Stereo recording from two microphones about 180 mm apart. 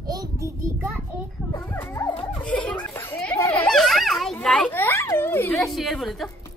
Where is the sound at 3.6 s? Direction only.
Centre (ahead or behind).